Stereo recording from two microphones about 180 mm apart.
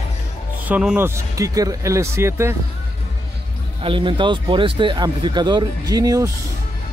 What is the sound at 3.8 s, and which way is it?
Speech, 30° right (ahead or behind).